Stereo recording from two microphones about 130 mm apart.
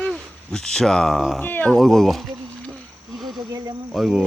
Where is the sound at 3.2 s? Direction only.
Centre (ahead or behind).